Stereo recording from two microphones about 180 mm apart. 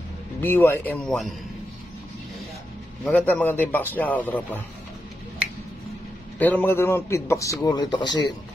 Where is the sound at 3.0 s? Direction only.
5° left (ahead or behind).